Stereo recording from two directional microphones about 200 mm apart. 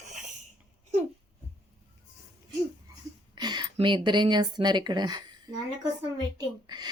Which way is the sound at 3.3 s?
20° right (ahead or behind).